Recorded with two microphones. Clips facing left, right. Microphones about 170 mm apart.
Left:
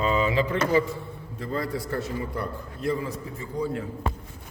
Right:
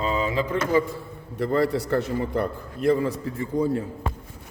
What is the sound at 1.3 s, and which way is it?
A man's voice, 70° right (ahead or behind).